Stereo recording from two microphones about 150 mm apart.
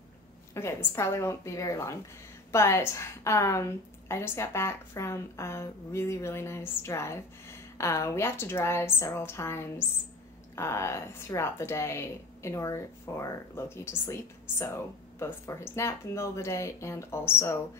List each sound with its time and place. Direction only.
0.6 s a woman's voice: 20° left (ahead or behind)